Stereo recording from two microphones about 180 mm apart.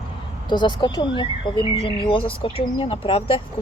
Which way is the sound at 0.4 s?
25° left (ahead or behind).